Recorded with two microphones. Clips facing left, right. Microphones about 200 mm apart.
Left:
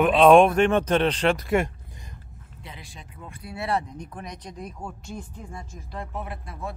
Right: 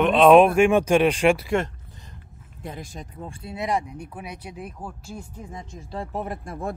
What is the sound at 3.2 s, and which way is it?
Speech, 25° right (ahead or behind).